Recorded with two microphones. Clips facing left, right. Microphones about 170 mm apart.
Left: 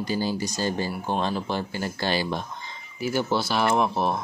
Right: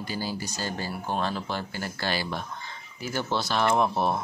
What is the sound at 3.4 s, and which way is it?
Speech, 5° left (ahead or behind).